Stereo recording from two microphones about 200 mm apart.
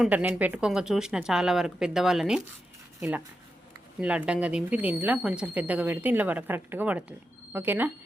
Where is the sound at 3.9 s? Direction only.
5° right (ahead or behind).